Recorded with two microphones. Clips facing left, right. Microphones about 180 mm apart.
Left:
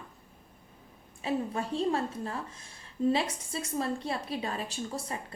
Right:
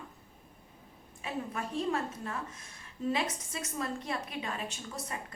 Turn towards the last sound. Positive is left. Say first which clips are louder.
# left 5 dB
turn(degrees=30)  # may be behind; listen again after turning